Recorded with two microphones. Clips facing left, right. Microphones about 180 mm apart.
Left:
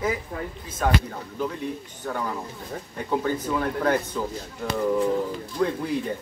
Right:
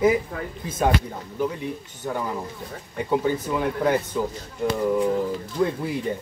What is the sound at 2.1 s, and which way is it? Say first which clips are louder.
Speech: right 2 dB; 15° right (ahead or behind).